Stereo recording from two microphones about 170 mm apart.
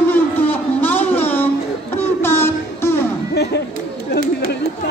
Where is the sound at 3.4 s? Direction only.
75° left (ahead or behind).